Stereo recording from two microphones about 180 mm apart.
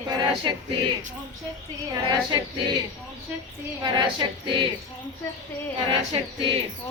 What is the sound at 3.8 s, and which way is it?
Speech, 25° right (ahead or behind).